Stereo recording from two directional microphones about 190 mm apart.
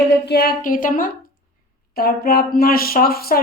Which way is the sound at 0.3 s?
55° left (ahead or behind).